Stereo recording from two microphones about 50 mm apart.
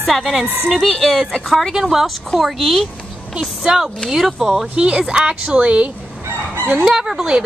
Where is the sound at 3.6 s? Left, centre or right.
Centre.